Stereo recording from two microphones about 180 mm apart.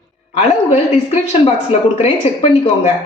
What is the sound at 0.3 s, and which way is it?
A woman's voice, 35° left (ahead or behind).